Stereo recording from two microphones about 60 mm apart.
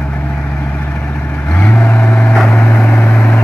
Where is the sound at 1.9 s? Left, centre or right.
Left.